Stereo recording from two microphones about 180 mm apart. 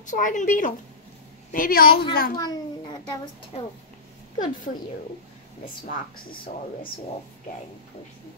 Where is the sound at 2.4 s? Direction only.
20° left (ahead or behind).